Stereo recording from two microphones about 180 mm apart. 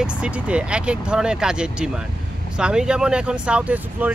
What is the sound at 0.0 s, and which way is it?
Speech, 5° right (ahead or behind).